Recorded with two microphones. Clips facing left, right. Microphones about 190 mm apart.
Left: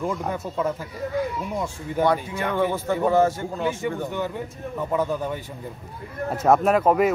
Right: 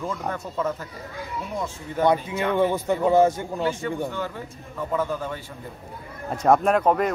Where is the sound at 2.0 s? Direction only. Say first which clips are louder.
Right 1 dB; 15° left (ahead or behind).